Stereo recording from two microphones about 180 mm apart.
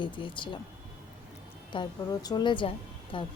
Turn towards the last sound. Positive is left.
turn(degrees=30)  # may be behind; listen again after turning